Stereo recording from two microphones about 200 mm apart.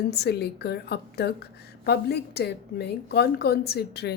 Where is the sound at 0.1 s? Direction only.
55° left (ahead or behind).